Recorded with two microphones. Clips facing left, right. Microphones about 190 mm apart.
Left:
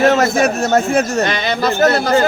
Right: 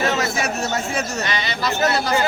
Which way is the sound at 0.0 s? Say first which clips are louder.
Left 9 dB; 50° left (ahead or behind).